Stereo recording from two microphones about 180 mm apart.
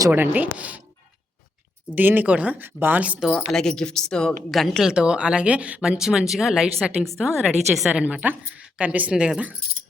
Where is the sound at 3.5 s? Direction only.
5° left (ahead or behind).